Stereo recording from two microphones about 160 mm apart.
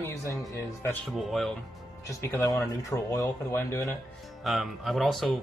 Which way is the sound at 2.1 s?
20° left (ahead or behind).